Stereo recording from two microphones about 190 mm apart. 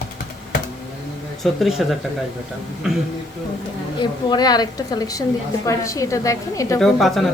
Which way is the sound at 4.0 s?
20° left (ahead or behind).